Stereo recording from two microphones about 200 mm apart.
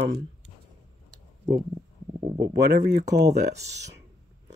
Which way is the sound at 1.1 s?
20° right (ahead or behind).